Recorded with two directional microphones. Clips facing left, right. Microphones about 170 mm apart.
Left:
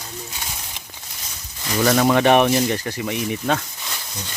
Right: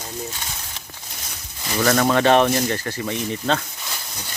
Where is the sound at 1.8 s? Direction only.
10° left (ahead or behind).